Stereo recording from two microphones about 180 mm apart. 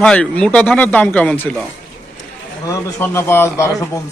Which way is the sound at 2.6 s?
15° left (ahead or behind).